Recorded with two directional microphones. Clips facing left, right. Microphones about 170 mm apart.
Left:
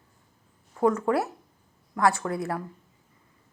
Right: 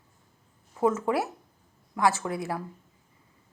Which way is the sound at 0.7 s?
20° right (ahead or behind).